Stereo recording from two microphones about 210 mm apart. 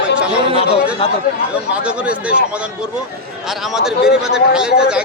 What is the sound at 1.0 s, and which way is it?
Speech, 30° left (ahead or behind).